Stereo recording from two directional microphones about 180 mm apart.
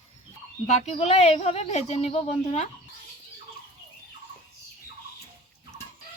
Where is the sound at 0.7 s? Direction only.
35° left (ahead or behind).